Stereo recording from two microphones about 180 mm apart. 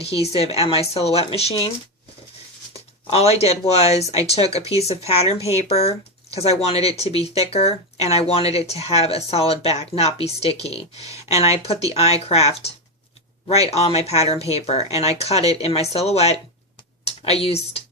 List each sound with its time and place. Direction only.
0.0 s speech: 35° left (ahead or behind)
2.7 s speech: 35° left (ahead or behind)